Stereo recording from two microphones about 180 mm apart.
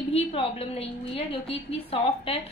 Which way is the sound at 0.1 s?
35° left (ahead or behind).